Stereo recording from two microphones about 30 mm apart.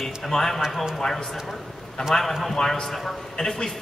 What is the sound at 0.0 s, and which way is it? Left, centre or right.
A man's voice, centre.